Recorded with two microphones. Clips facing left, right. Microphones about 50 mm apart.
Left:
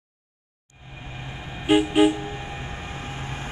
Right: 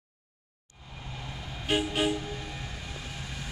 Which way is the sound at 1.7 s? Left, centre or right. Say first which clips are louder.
Left 10 dB; left.